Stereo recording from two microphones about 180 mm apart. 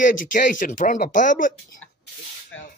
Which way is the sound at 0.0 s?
50° left (ahead or behind).